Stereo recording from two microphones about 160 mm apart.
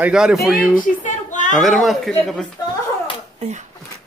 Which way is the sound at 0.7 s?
50° left (ahead or behind).